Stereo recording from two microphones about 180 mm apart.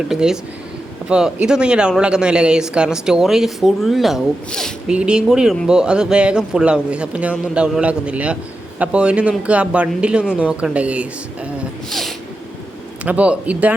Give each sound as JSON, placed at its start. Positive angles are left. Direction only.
{"t": 0.1, "sound": "a man's voice", "side_deg": -5}